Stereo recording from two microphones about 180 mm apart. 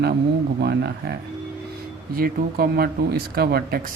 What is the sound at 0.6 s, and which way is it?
Speech, 65° right (ahead or behind).